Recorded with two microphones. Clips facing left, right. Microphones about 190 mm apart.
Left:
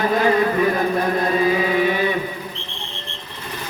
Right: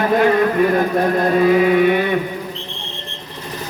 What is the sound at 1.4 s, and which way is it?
Chant, 55° right (ahead or behind).